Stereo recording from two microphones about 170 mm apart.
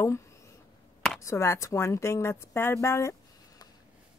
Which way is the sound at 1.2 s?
15° left (ahead or behind).